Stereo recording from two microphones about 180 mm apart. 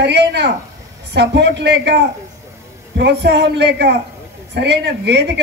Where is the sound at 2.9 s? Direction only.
70° right (ahead or behind).